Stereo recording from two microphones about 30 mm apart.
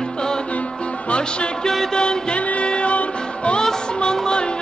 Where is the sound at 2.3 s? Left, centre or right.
Left.